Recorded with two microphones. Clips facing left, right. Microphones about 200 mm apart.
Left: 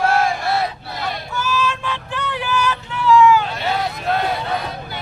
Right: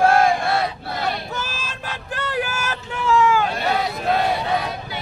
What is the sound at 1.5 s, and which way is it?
Vehicle, 35° right (ahead or behind).